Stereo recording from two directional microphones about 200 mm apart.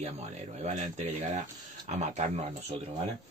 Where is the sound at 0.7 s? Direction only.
35° right (ahead or behind).